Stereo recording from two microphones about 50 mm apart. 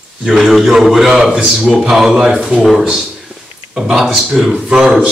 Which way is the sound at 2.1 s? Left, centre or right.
Right.